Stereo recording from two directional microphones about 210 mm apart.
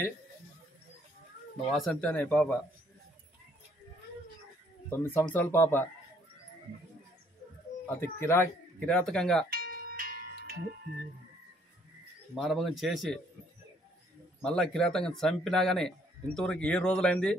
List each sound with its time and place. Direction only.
1.7 s speech: 5° left (ahead or behind)
4.8 s speech: 10° left (ahead or behind)
7.9 s speech: 10° left (ahead or behind)
9.5 s music: 45° right (ahead or behind)
12.4 s speech: centre (ahead or behind)
14.4 s speech: 5° left (ahead or behind)